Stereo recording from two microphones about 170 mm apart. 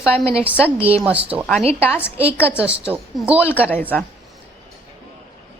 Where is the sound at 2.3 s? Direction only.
10° left (ahead or behind).